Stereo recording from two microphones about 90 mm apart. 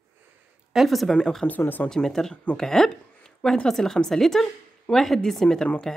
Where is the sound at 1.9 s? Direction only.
5° left (ahead or behind).